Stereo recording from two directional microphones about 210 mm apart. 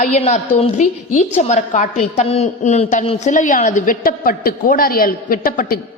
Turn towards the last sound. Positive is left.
turn(degrees=40)  # may be behind; listen again after turning